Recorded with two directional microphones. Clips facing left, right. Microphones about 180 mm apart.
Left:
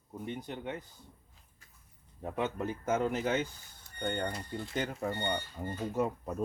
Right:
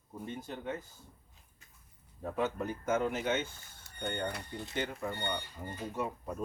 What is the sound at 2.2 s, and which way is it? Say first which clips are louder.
Speech: even; 25° left (ahead or behind).